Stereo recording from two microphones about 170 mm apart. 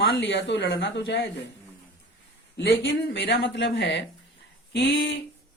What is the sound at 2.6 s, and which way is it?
A man's voice, 90° left.